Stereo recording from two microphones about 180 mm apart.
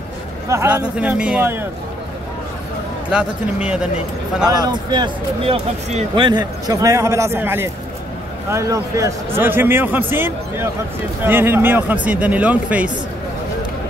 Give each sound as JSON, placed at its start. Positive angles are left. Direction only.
{"t": 0.5, "sound": "a man's voice", "side_deg": -15}
{"t": 3.1, "sound": "a man's voice", "side_deg": -5}
{"t": 4.5, "sound": "speech", "side_deg": -25}
{"t": 6.2, "sound": "a man's voice", "side_deg": -20}